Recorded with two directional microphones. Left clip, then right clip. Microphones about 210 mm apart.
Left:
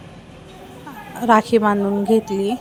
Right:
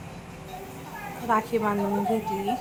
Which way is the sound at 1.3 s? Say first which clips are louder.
Left 10 dB; 35° left (ahead or behind).